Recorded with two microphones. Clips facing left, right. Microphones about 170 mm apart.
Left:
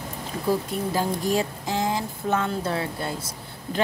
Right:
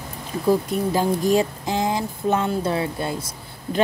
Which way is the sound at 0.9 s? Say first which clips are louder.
Right 5 dB; 20° right (ahead or behind).